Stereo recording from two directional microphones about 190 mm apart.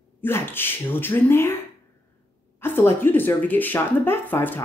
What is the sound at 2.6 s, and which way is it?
Speech, 10° left (ahead or behind).